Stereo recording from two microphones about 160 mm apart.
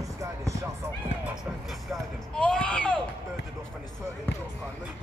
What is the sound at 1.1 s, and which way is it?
Basketball bounce, 90° left.